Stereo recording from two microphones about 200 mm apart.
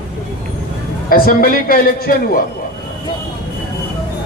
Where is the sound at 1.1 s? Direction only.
45° left (ahead or behind).